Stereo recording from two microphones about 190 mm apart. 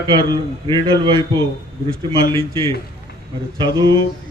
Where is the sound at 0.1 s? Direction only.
25° right (ahead or behind).